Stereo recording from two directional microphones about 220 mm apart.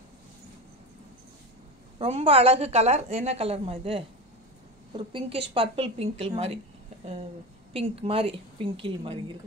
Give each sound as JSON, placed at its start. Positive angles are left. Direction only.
{"t": 2.0, "sound": "a woman's voice", "side_deg": -25}
{"t": 7.7, "sound": "a woman's voice", "side_deg": -25}